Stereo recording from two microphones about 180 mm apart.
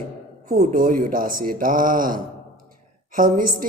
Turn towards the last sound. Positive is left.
turn(degrees=-50)  # may be behind; listen again after turning